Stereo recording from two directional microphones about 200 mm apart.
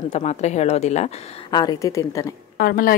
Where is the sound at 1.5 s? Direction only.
15° left (ahead or behind).